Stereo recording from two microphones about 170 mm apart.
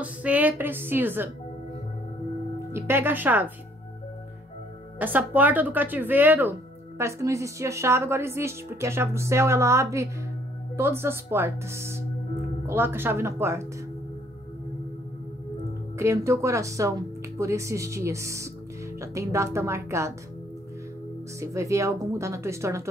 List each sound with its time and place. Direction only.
0.0 s a woman's voice: 10° right (ahead or behind)
2.7 s a woman's voice: 15° right (ahead or behind)
4.9 s a woman's voice: 10° right (ahead or behind)
16.0 s a woman's voice: 15° right (ahead or behind)
21.4 s a woman's voice: 15° right (ahead or behind)